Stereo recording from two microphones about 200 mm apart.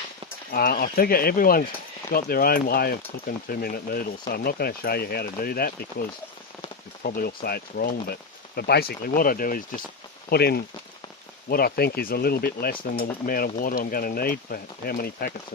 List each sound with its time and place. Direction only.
0.5 s speech: 50° left (ahead or behind)
7.0 s speech: 50° left (ahead or behind)